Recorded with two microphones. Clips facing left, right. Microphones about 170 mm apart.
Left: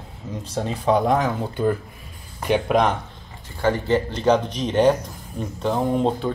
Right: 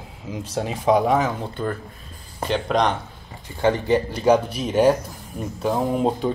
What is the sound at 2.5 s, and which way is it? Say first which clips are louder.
Speech: left 2 dB; 5° left (ahead or behind).